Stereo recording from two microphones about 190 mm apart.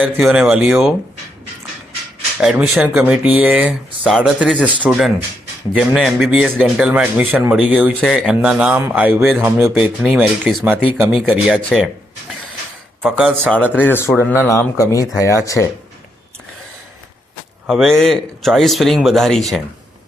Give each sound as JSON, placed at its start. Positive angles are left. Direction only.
{"t": 0.0, "sound": "speech", "side_deg": -5}
{"t": 2.4, "sound": "speech", "side_deg": 0}
{"t": 13.0, "sound": "speech", "side_deg": -5}
{"t": 13.8, "sound": "speech", "side_deg": 10}
{"t": 17.7, "sound": "speech", "side_deg": 0}